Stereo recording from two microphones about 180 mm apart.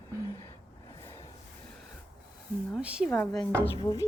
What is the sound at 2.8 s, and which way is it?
Speech, 5° right (ahead or behind).